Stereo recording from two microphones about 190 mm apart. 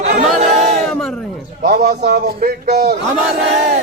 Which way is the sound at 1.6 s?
55° right (ahead or behind).